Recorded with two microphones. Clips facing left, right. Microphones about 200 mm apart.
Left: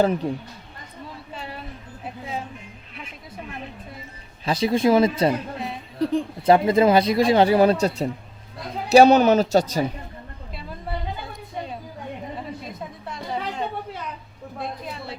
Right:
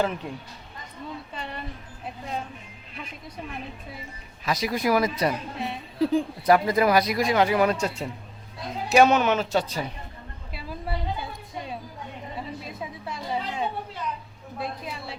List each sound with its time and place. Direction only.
0.2 s speech: 35° left (ahead or behind)
1.3 s a sound: 5° left (ahead or behind)
4.4 s speech: 30° left (ahead or behind)
5.5 s a woman's voice: centre (ahead or behind)
6.4 s speech: 25° left (ahead or behind); by 9.8 s 40° left (ahead or behind)
10.5 s a sound: 5° right (ahead or behind)
12.8 s music: centre (ahead or behind)
14.6 s a woman's voice: centre (ahead or behind)